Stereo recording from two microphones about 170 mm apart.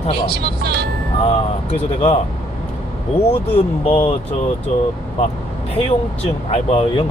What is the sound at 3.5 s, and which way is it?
Speech, 40° left (ahead or behind).